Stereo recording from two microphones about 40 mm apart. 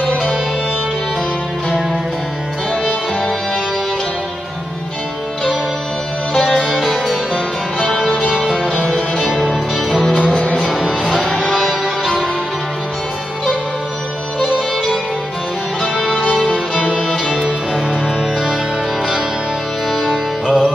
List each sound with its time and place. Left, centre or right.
6.6 s music: centre
8.9 s music: centre
10.1 s music: left
10.6 s music: centre
16.1 s music: centre
16.3 s music: centre
20.0 s music: centre